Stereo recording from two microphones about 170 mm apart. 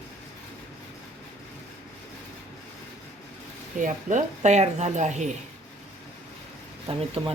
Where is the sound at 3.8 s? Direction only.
45° right (ahead or behind).